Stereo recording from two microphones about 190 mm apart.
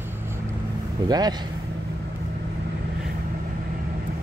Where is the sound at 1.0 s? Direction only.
20° right (ahead or behind).